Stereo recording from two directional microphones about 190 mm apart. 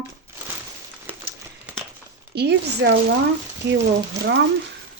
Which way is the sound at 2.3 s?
60° right (ahead or behind).